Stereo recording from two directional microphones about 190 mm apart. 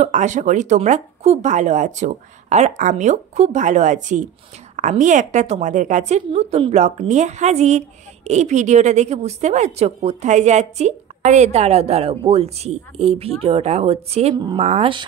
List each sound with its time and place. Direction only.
0.0 s a woman's voice: 40° right (ahead or behind)
14.3 s a woman's voice: 25° right (ahead or behind)